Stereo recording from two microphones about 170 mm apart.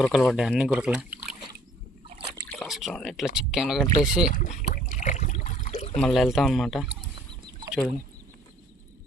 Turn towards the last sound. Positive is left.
turn(degrees=-30)  # may be behind; listen again after turning